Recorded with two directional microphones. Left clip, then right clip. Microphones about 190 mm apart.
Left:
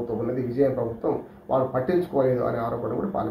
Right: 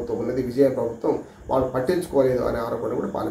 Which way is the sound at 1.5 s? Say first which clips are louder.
Right 1 dB; 10° right (ahead or behind).